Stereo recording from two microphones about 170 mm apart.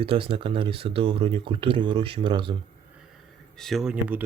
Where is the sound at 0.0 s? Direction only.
30° right (ahead or behind).